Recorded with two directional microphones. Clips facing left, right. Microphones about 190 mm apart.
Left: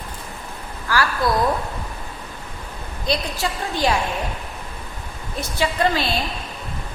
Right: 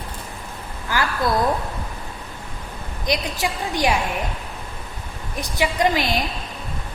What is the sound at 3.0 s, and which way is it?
Speech, 15° right (ahead or behind).